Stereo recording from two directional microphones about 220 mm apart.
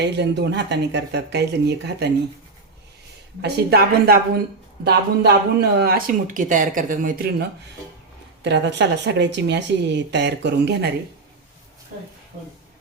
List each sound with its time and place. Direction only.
0.0 s a woman's voice: 50° right (ahead or behind)
3.4 s a woman's voice: 45° right (ahead or behind)
8.4 s a woman's voice: 50° right (ahead or behind)